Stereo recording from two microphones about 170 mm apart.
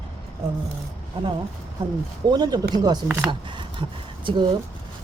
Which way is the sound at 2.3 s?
25° right (ahead or behind).